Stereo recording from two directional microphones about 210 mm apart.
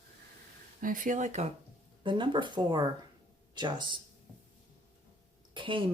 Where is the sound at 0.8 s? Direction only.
40° right (ahead or behind).